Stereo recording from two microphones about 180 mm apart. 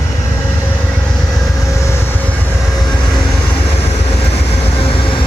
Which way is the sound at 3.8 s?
35° left (ahead or behind).